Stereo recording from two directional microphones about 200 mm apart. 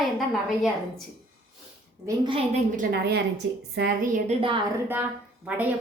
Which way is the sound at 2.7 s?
45° right (ahead or behind).